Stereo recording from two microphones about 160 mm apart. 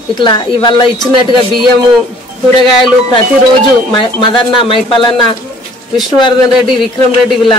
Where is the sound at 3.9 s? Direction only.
30° left (ahead or behind).